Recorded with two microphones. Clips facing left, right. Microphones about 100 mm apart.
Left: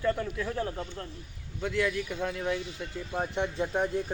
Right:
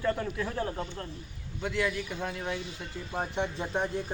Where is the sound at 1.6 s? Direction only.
20° right (ahead or behind).